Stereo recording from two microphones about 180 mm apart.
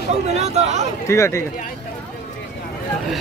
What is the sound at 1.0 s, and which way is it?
Speech, 15° left (ahead or behind).